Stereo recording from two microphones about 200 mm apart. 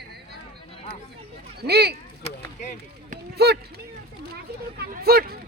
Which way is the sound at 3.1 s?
55° right (ahead or behind).